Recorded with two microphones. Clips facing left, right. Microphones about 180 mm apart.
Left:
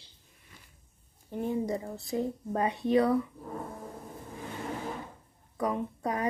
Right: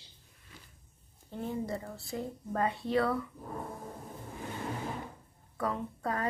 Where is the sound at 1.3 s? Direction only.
15° left (ahead or behind).